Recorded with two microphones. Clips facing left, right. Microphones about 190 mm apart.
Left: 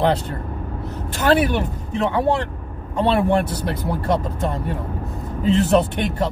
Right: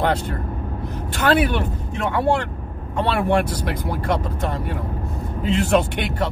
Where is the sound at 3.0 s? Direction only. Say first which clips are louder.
Left 2 dB; 30° left (ahead or behind).